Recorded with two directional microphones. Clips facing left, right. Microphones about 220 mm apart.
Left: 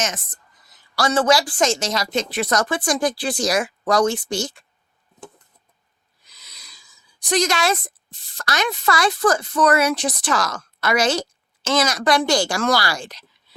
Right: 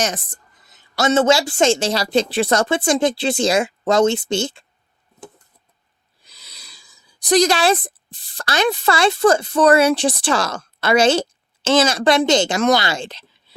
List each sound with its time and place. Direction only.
0.0 s a woman's voice: 30° right (ahead or behind)
6.2 s speech: 30° right (ahead or behind)